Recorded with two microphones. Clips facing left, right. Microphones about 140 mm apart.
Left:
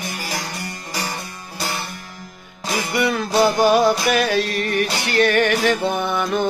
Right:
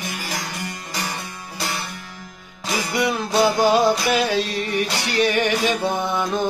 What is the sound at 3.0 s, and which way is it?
Music, 20° right (ahead or behind).